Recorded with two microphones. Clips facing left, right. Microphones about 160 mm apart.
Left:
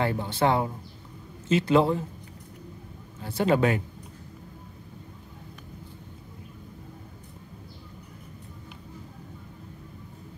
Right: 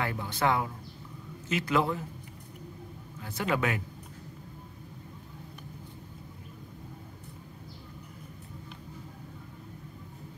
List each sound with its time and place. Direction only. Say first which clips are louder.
0.0 s speech: left 5 dB; 30° left (ahead or behind)
3.2 s a man's voice: left 7 dB; 30° left (ahead or behind)